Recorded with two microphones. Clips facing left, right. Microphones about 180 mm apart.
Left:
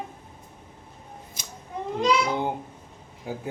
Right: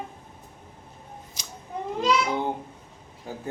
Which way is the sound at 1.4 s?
50° left (ahead or behind).